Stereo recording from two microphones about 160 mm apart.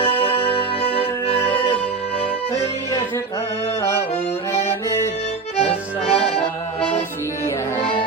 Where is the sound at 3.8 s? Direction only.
15° left (ahead or behind).